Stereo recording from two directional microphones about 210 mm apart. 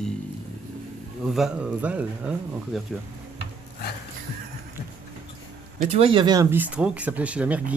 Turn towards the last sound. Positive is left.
turn(degrees=-5)  # may be behind; listen again after turning